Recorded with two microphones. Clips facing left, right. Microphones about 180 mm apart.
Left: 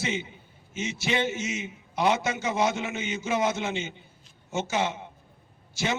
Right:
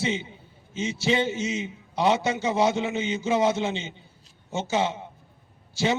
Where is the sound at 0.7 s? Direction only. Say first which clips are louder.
Right 4 dB; 30° right (ahead or behind).